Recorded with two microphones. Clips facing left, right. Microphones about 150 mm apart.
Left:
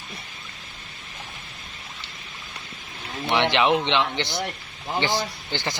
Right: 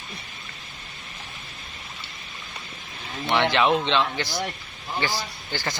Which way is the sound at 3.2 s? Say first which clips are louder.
Even; 20° left (ahead or behind).